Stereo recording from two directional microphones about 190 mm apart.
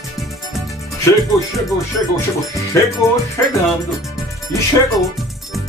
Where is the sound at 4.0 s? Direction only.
Centre (ahead or behind).